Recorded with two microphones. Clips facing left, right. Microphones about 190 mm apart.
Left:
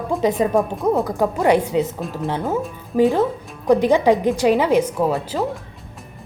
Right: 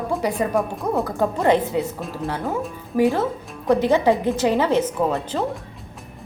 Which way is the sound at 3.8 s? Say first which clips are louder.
Left 1 dB; 15° left (ahead or behind).